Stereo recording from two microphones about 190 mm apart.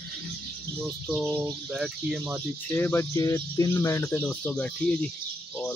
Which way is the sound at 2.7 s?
15° left (ahead or behind).